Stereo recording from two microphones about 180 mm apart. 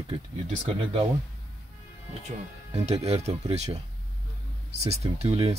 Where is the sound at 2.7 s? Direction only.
35° right (ahead or behind).